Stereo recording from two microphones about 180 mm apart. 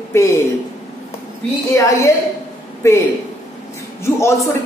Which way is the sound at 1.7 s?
15° left (ahead or behind).